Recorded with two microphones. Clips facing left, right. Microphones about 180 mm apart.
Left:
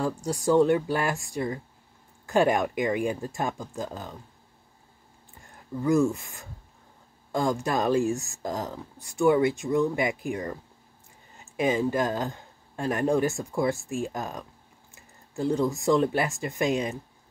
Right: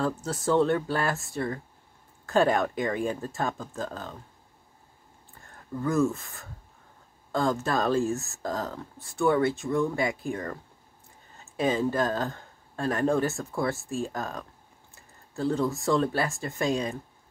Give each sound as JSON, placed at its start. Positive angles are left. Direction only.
{"t": 0.2, "sound": "speech", "side_deg": 15}
{"t": 5.4, "sound": "speech", "side_deg": 15}
{"t": 7.6, "sound": "speech", "side_deg": 15}